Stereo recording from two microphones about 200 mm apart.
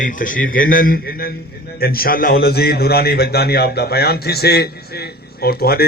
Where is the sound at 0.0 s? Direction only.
40° left (ahead or behind).